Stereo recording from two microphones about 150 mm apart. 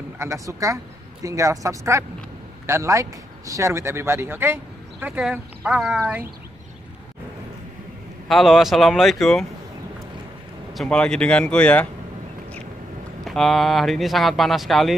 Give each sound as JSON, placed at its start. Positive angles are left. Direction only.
{"t": 0.2, "sound": "speech", "side_deg": -20}
{"t": 8.3, "sound": "speech", "side_deg": 0}
{"t": 10.7, "sound": "speech", "side_deg": 5}
{"t": 13.2, "sound": "speech", "side_deg": 0}